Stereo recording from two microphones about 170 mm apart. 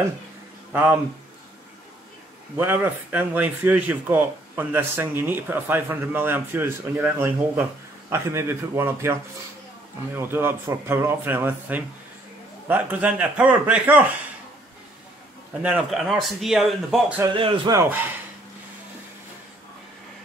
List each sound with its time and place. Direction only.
2.5 s speech: 10° right (ahead or behind)
10.1 s speech: 15° right (ahead or behind)
15.6 s speech: 5° right (ahead or behind)
17.3 s a man's voice: 30° right (ahead or behind)
17.7 s speech: 10° right (ahead or behind)